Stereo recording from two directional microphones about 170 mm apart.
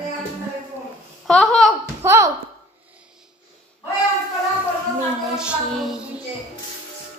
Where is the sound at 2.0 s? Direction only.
15° right (ahead or behind).